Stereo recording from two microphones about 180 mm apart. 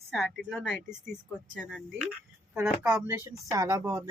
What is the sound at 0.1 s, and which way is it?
Speech, centre (ahead or behind).